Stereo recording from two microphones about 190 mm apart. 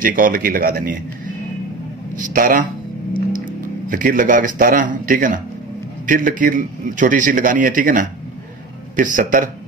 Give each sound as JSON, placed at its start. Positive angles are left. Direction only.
{"t": 0.0, "sound": "a man's voice", "side_deg": -45}
{"t": 3.9, "sound": "a man's voice", "side_deg": -45}